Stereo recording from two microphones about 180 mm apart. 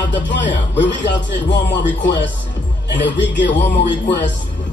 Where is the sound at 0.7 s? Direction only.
80° left.